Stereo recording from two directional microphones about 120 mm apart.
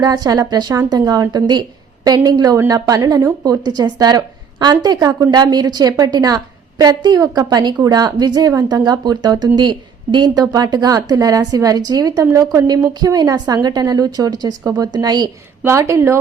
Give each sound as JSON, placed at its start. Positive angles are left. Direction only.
{"t": 0.0, "sound": "a woman's voice", "side_deg": -35}
{"t": 15.6, "sound": "a woman's voice", "side_deg": -25}